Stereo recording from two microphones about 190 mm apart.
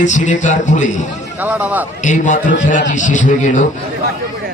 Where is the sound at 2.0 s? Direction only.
40° left (ahead or behind).